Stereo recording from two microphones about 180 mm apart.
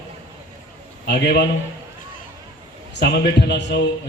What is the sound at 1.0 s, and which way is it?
Speech, 65° left (ahead or behind).